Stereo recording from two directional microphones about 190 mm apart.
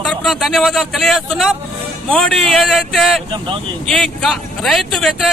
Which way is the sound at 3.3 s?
25° right (ahead or behind).